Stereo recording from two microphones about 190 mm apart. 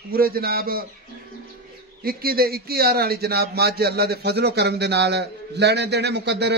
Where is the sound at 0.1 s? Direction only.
50° right (ahead or behind).